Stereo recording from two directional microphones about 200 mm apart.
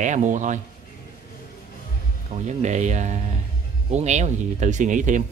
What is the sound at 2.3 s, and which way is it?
Speech, 35° right (ahead or behind).